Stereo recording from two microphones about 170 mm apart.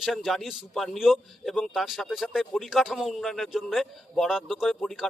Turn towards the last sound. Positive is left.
turn(degrees=0)  # may be behind; listen again after turning